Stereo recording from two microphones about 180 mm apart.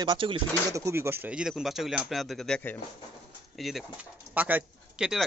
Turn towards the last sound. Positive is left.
turn(degrees=-5)  # may be behind; listen again after turning